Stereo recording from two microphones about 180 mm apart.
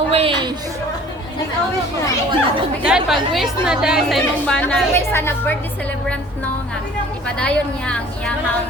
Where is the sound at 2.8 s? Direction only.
5° right (ahead or behind); by 5.5 s 15° left (ahead or behind).